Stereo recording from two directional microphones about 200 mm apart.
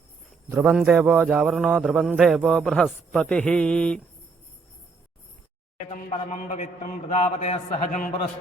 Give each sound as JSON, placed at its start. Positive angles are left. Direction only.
{"t": 0.5, "sound": "a man's voice", "side_deg": -5}
{"t": 5.9, "sound": "a man's voice", "side_deg": 40}